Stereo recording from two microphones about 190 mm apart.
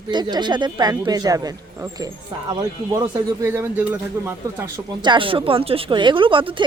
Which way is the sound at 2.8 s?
20° right (ahead or behind).